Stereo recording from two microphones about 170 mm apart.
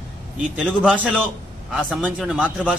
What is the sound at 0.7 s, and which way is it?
A man's voice, 5° left (ahead or behind).